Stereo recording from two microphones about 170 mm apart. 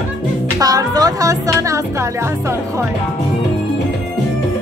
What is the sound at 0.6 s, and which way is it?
Music, 20° right (ahead or behind).